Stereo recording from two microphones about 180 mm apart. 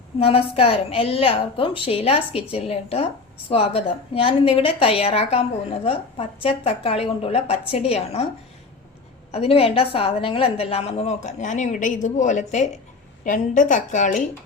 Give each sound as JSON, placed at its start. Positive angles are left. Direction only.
{"t": 0.2, "sound": "a woman's voice", "side_deg": 30}
{"t": 9.3, "sound": "a woman's voice", "side_deg": 35}